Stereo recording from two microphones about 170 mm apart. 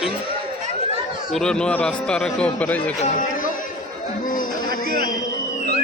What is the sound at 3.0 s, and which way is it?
Chatter, 50° left (ahead or behind).